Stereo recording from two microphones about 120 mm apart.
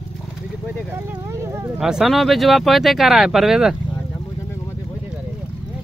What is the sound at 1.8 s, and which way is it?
Speech, 5° right (ahead or behind).